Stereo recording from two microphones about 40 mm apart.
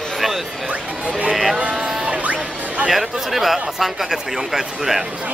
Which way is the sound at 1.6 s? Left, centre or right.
Right.